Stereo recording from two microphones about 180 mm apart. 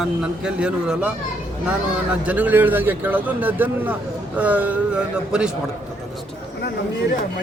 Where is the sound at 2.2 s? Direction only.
10° right (ahead or behind).